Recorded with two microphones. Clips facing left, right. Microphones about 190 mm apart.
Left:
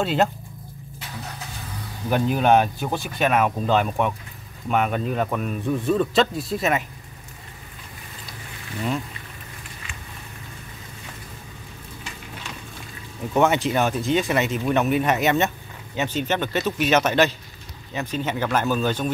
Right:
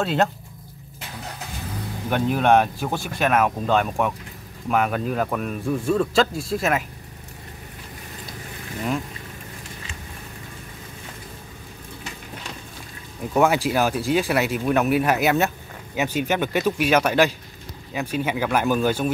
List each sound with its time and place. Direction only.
0.0 s speech: centre (ahead or behind)
2.0 s speech: centre (ahead or behind)
13.3 s speech: 5° right (ahead or behind)